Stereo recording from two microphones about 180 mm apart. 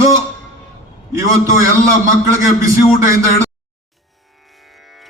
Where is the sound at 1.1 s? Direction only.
15° right (ahead or behind).